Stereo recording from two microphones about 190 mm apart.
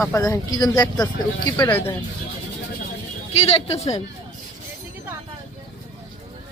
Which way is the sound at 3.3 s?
30° left (ahead or behind).